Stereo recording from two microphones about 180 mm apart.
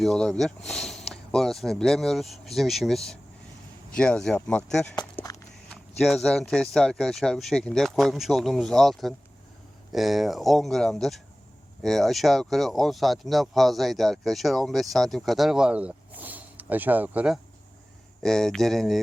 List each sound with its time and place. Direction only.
0.0 s speech: centre (ahead or behind)
4.9 s walk: 20° left (ahead or behind)
6.0 s speech: centre (ahead or behind)